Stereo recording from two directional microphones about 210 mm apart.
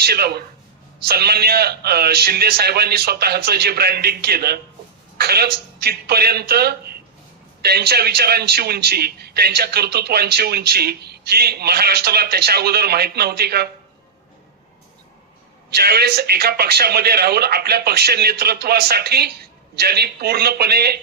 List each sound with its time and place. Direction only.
0.0 s a man's voice: 50° right (ahead or behind)
15.7 s a man's voice: 50° right (ahead or behind)